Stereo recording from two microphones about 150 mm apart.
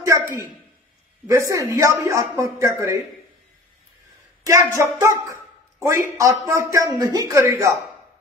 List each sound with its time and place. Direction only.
0.0 s a sound: 20° right (ahead or behind)
1.2 s a woman's voice: 20° right (ahead or behind)
4.5 s a woman's voice: 20° right (ahead or behind)